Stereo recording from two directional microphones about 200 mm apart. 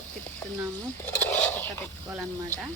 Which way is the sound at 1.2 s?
5° left (ahead or behind).